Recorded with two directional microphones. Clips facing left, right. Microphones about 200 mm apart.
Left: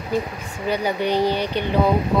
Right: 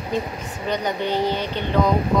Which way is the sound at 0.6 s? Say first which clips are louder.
Left 2 dB; 10° left (ahead or behind).